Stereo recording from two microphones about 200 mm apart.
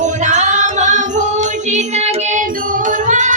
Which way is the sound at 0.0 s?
35° right (ahead or behind).